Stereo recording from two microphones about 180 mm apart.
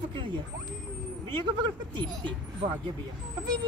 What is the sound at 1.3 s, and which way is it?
A man's voice, 25° right (ahead or behind).